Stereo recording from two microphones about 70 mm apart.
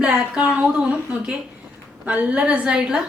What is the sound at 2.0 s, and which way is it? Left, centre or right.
Speech, centre.